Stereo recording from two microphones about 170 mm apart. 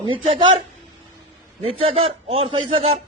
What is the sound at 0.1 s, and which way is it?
Speech, 30° right (ahead or behind).